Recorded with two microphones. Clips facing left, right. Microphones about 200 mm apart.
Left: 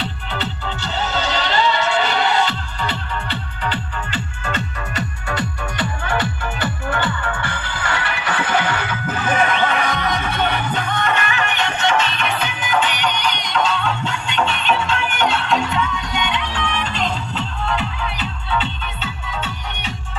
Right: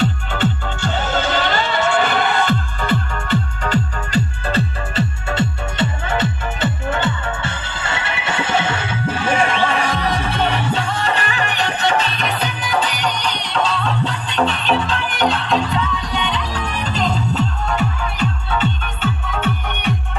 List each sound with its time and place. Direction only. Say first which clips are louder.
0.0 s music: right 7 dB; 50° right (ahead or behind)